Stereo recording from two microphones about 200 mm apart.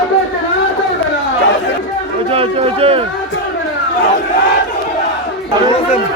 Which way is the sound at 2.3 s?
30° right (ahead or behind).